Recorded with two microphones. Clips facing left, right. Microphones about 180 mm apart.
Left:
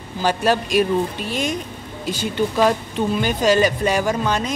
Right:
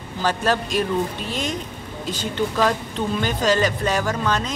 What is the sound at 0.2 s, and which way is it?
Speech, 15° left (ahead or behind).